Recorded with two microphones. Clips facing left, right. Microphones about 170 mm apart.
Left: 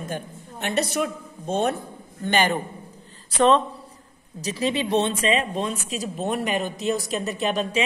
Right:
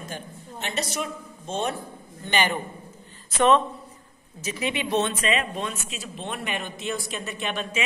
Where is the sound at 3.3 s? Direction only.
30° left (ahead or behind).